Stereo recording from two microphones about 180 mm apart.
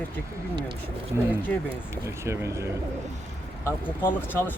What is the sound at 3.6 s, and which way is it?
Speech, 10° left (ahead or behind).